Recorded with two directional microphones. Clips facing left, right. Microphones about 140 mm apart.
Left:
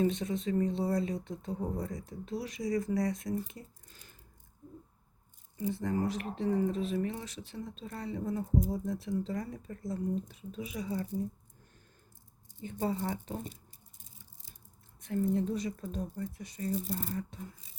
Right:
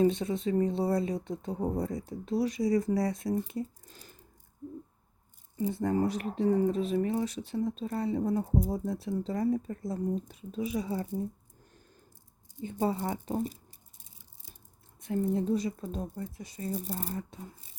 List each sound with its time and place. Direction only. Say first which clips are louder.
0.0 s speech: right 4 dB; 35° right (ahead or behind)
5.7 s speech: right 4 dB; 35° right (ahead or behind)
12.6 s speech: right 3 dB; 35° right (ahead or behind)
15.0 s speech: right 2 dB; 30° right (ahead or behind)
17.0 s speech: even; 35° right (ahead or behind)